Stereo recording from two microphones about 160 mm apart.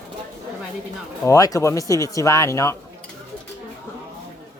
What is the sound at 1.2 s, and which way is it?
Speech, 20° left (ahead or behind).